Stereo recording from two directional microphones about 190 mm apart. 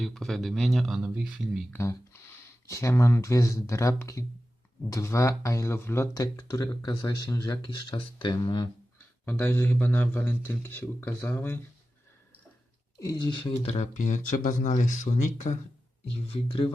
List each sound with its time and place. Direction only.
0.0 s speech: centre (ahead or behind)
1.7 s a man's voice: 15° left (ahead or behind)
9.2 s a man's voice: 10° left (ahead or behind)
13.0 s speech: 20° left (ahead or behind)